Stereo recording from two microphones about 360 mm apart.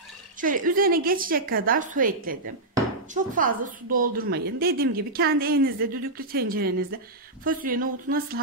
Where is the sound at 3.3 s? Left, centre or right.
Right.